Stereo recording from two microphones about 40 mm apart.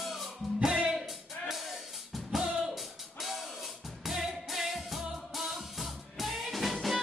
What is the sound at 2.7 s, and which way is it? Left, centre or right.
Music, centre.